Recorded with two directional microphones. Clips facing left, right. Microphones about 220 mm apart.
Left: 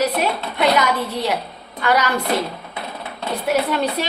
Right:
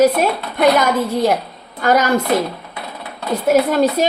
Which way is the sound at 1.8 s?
45° right (ahead or behind).